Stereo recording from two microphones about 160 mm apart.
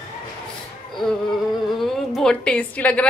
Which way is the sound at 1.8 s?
5° left (ahead or behind).